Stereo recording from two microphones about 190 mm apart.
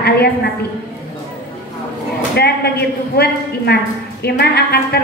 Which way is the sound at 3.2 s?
60° left (ahead or behind).